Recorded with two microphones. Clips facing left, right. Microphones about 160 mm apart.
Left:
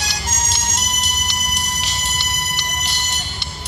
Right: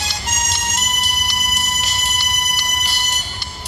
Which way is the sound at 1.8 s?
10° right (ahead or behind).